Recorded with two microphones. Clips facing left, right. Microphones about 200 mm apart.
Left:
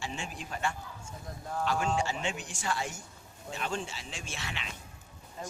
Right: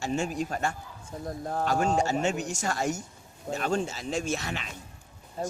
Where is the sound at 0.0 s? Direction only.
45° right (ahead or behind).